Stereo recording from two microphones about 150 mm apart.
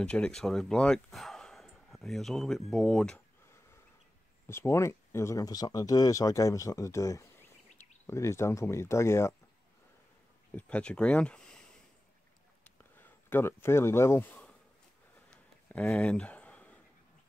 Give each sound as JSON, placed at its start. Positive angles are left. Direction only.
{"t": 0.0, "sound": "speech", "side_deg": 5}
{"t": 4.5, "sound": "speech", "side_deg": 20}
{"t": 10.5, "sound": "speech", "side_deg": 10}
{"t": 12.6, "sound": "speech", "side_deg": 15}
{"t": 15.2, "sound": "a sound", "side_deg": 5}